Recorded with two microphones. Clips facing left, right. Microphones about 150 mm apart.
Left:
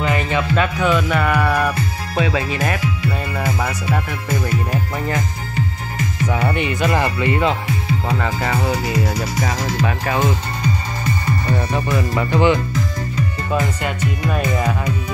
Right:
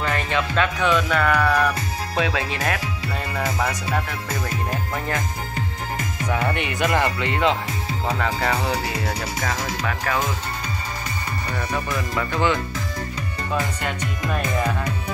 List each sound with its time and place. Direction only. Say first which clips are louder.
0.0 s speech: left 4 dB; 10° left (ahead or behind)
6.2 s speech: left 4 dB; 5° left (ahead or behind)
9.8 s speech: left 1 dB; 20° left (ahead or behind)
11.5 s speech: left 4 dB; 25° left (ahead or behind)
13.5 s speech: left 2 dB; 5° left (ahead or behind)